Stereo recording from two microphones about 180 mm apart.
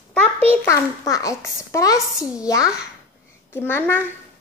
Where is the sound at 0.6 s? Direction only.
20° left (ahead or behind).